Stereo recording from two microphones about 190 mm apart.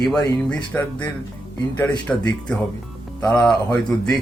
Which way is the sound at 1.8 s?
5° left (ahead or behind).